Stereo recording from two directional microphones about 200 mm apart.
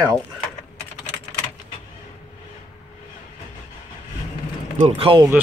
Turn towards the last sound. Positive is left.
turn(degrees=-25)  # may be behind; listen again after turning